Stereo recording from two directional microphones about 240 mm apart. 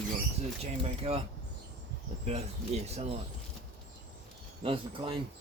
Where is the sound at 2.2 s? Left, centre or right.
Right.